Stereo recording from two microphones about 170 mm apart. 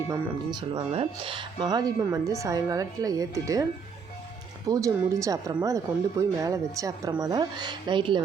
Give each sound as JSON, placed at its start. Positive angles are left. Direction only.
{"t": 0.7, "sound": "speech", "side_deg": -30}
{"t": 4.7, "sound": "speech", "side_deg": -20}